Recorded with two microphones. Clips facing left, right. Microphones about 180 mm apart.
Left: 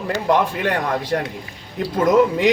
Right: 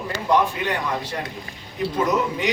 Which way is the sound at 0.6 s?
75° left (ahead or behind).